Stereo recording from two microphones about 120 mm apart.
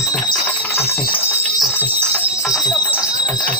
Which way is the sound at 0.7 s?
55° left (ahead or behind).